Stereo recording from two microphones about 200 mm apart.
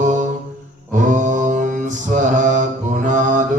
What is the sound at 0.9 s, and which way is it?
Mantra, 40° right (ahead or behind).